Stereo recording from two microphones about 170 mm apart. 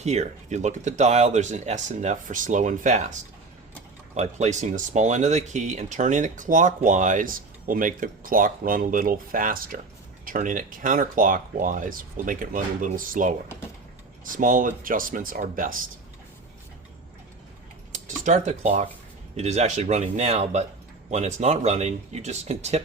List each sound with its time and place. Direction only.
0.0 s speech: 40° right (ahead or behind)
4.2 s speech: 45° right (ahead or behind)
17.9 s speech: 45° right (ahead or behind)